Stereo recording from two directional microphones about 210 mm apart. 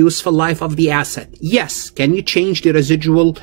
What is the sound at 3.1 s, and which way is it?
Speech, 45° right (ahead or behind).